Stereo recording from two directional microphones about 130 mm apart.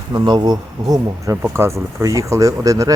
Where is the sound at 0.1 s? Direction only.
35° right (ahead or behind).